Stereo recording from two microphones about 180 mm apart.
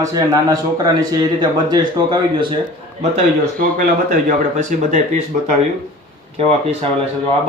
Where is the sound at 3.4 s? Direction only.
50° right (ahead or behind).